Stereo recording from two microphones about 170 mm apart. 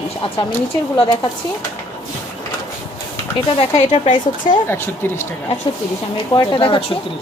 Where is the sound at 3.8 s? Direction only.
45° left (ahead or behind).